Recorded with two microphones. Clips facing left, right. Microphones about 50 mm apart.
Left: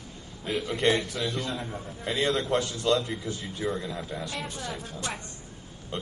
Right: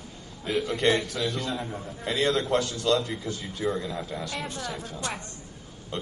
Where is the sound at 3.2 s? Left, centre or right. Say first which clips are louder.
Right 1 dB; left.